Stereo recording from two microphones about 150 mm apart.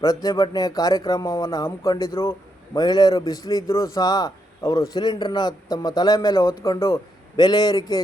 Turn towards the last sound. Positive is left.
turn(degrees=25)  # may be behind; listen again after turning